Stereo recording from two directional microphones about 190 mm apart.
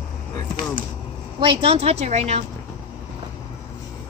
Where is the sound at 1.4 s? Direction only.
30° right (ahead or behind).